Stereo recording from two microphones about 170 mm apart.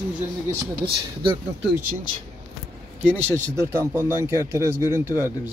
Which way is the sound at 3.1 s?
15° right (ahead or behind).